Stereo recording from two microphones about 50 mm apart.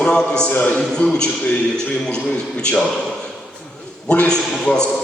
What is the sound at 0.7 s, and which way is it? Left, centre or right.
A man's voice, centre.